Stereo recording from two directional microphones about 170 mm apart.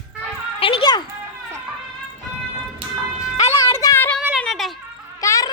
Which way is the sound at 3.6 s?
20° left (ahead or behind).